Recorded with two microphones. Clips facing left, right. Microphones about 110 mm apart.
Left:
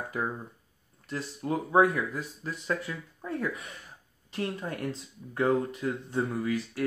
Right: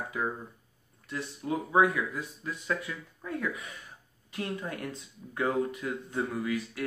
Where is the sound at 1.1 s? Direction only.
40° left (ahead or behind).